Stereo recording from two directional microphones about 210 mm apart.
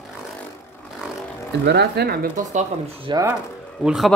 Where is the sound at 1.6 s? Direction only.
50° right (ahead or behind); by 3.1 s 35° right (ahead or behind).